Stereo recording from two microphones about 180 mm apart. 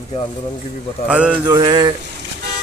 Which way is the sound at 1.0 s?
5° right (ahead or behind).